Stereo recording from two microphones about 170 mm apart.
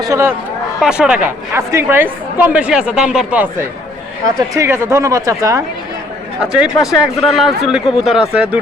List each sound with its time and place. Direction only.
0.1 s a woman's voice: 15° right (ahead or behind)
6.4 s speech: 5° right (ahead or behind)